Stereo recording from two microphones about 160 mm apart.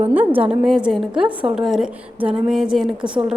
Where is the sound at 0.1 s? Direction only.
10° right (ahead or behind).